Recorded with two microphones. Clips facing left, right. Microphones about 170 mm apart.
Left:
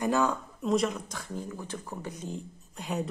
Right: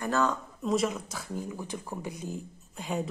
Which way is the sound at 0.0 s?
15° left (ahead or behind).